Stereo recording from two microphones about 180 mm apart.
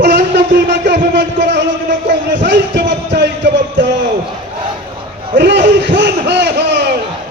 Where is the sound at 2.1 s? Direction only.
75° right (ahead or behind).